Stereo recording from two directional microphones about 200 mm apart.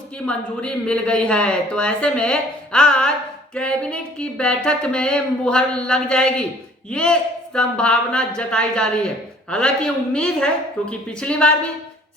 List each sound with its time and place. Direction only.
0.3 s speech: 5° left (ahead or behind)